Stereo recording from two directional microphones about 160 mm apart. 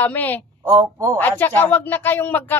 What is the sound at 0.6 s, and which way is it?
Speech, 15° right (ahead or behind).